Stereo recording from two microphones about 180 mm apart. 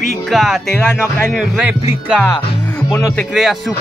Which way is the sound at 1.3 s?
5° right (ahead or behind).